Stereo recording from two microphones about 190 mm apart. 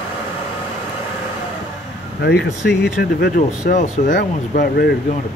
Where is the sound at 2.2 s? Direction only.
60° left (ahead or behind).